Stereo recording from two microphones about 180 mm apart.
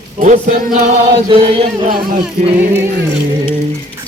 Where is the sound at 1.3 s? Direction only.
30° right (ahead or behind).